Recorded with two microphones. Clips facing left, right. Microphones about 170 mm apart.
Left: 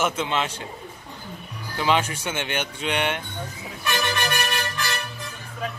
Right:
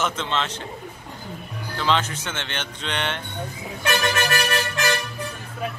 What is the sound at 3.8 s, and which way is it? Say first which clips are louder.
Music: right 3 dB; 85° right.